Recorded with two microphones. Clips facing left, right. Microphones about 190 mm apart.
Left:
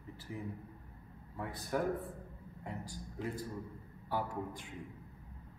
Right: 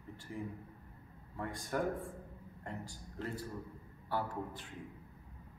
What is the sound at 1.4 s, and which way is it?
A man's voice, 5° left (ahead or behind).